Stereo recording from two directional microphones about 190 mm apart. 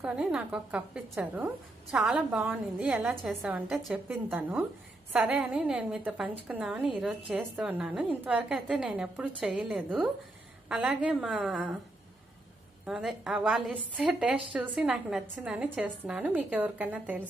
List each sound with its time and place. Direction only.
0.0 s a woman's voice: 5° right (ahead or behind)
12.8 s a woman's voice: 5° right (ahead or behind)